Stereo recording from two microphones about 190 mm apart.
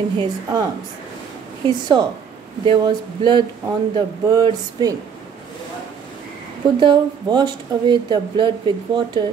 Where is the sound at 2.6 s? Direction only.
25° right (ahead or behind).